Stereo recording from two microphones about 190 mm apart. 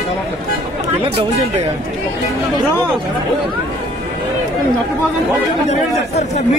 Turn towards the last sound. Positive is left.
turn(degrees=35)  # may be behind; listen again after turning